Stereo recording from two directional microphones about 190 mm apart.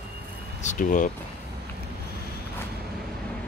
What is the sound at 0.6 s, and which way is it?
Speech, 40° left (ahead or behind).